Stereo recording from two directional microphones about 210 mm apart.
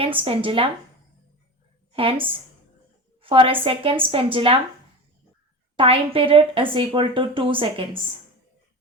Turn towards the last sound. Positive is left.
turn(degrees=-25)  # may be behind; listen again after turning